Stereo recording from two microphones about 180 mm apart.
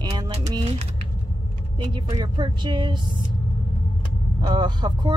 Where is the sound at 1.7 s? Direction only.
25° right (ahead or behind).